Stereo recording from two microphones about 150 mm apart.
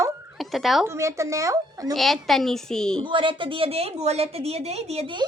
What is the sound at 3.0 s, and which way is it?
A woman's voice, 35° right (ahead or behind).